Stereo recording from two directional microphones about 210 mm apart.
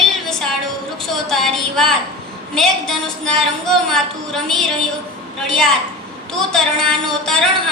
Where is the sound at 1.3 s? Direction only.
Centre (ahead or behind).